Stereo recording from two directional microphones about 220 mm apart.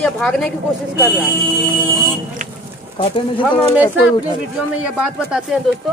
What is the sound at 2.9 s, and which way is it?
Speech, 20° left (ahead or behind).